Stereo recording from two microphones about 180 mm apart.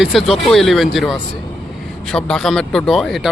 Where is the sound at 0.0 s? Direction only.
Centre (ahead or behind).